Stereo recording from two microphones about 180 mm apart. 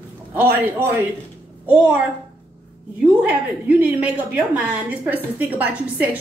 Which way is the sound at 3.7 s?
10° right (ahead or behind).